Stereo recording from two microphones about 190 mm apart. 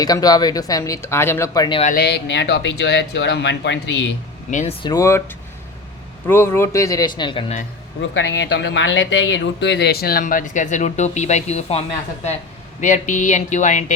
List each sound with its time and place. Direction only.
0.0 s speech: 20° left (ahead or behind)
2.0 s speech: 60° left (ahead or behind)
4.8 s a man's voice: 20° left (ahead or behind)
6.2 s a man's voice: 10° left (ahead or behind); by 7.6 s 30° left (ahead or behind)
8.1 s speech: 70° left (ahead or behind); by 11.8 s 35° left (ahead or behind)
12.8 s speech: 40° left (ahead or behind)